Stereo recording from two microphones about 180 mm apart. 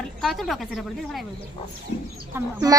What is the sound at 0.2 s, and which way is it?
Speech, centre (ahead or behind).